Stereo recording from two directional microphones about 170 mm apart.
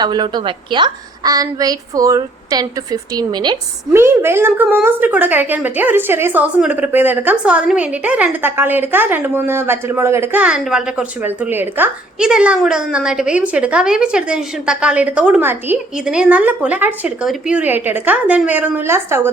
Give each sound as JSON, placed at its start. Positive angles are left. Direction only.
{"t": 0.0, "sound": "a woman's voice", "side_deg": -25}
{"t": 3.9, "sound": "a woman's voice", "side_deg": -15}